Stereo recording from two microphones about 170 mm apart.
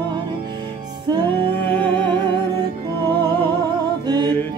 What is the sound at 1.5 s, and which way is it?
Music, 10° left (ahead or behind).